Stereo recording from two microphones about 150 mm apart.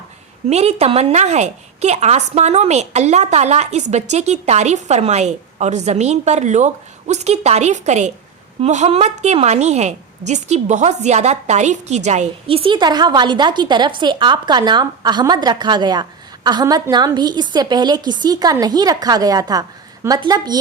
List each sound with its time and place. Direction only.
0.4 s a woman's voice: 45° right (ahead or behind); by 20.6 s 25° right (ahead or behind)